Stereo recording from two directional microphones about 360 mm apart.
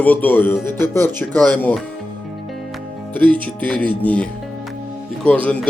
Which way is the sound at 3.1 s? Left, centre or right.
Centre.